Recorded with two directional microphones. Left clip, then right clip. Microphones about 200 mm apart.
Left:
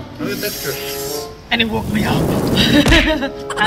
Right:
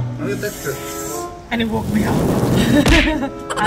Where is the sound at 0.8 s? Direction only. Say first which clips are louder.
Left 2 dB; 5° right (ahead or behind).